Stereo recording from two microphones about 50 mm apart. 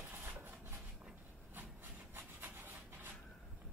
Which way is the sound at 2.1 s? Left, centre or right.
Right.